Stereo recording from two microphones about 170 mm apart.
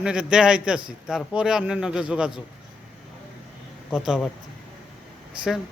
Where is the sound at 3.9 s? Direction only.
5° right (ahead or behind).